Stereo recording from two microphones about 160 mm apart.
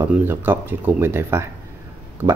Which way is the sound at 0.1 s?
10° right (ahead or behind).